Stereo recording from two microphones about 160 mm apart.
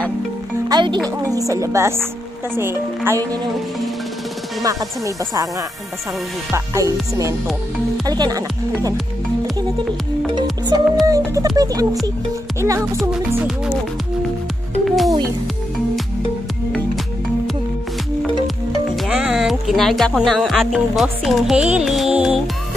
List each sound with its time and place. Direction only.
0.7 s music: 25° right (ahead or behind)
1.1 s speech: 20° right (ahead or behind)
4.6 s speech: 20° right (ahead or behind)
6.5 s speech: 20° right (ahead or behind)
10.7 s speech: 25° right (ahead or behind)
14.9 s music: centre (ahead or behind)
19.0 s speech: 5° right (ahead or behind)
21.7 s music: centre (ahead or behind)